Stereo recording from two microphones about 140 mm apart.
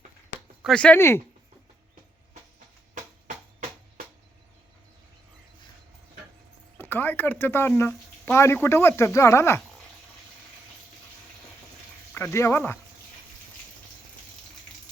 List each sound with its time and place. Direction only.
0.6 s speech: 5° left (ahead or behind)
6.7 s speech: 15° left (ahead or behind)
12.1 s speech: 15° left (ahead or behind)